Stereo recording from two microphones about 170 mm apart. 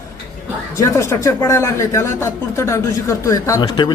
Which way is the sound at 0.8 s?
15° left (ahead or behind).